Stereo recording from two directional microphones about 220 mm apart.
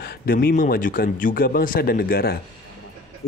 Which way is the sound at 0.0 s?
45° left (ahead or behind).